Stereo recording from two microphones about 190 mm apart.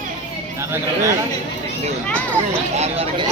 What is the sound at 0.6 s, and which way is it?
Speech, 15° right (ahead or behind).